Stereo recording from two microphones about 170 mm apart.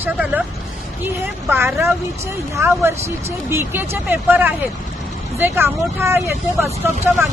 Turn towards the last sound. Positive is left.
turn(degrees=-15)  # may be behind; listen again after turning